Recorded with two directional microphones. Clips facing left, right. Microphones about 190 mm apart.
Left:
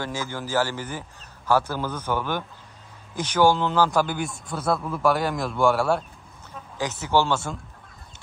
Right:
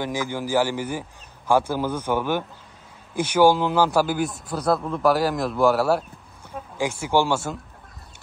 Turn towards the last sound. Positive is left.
turn(degrees=-10)  # may be behind; listen again after turning